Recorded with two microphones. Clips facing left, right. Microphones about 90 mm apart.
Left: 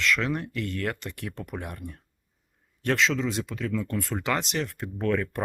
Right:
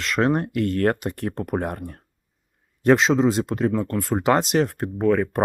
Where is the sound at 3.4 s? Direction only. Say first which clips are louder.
Right 8 dB; 55° right (ahead or behind).